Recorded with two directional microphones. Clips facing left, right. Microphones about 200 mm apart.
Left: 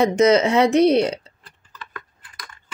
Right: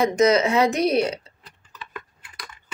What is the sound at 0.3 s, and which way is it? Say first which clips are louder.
Speech: left 3 dB; 30° left (ahead or behind).